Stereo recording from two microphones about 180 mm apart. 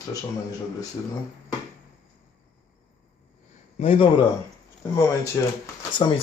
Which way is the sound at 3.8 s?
35° left (ahead or behind).